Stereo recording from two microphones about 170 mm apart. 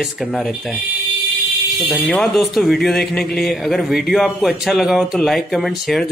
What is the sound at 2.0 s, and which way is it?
A man's voice, centre (ahead or behind).